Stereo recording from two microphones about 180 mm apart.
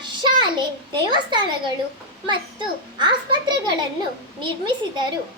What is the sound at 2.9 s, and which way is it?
Speech, 25° right (ahead or behind).